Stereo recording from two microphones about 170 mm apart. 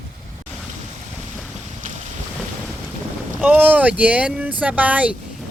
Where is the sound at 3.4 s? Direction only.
10° right (ahead or behind).